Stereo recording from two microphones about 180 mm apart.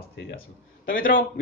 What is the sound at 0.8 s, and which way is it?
Speech, 50° left (ahead or behind).